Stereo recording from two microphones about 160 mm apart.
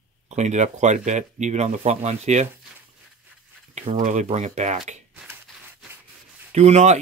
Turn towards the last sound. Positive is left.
turn(degrees=-45)  # may be behind; listen again after turning